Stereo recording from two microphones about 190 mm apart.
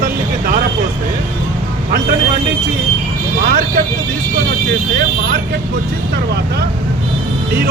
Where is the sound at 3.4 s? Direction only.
45° right (ahead or behind).